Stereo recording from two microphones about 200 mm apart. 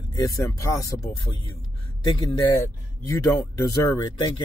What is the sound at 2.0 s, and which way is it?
Speech, 20° left (ahead or behind).